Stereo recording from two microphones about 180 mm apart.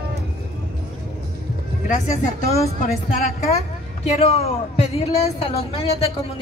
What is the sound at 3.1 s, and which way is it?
A woman's voice, 35° left (ahead or behind).